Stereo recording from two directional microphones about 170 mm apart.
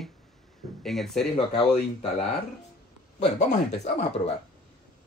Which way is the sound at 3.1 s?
45° left (ahead or behind).